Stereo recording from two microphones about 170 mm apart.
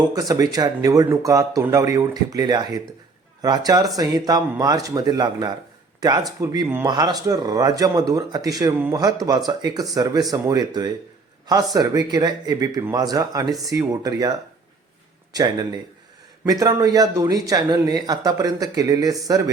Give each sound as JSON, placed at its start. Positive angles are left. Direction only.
{"t": 0.1, "sound": "a man's voice", "side_deg": -20}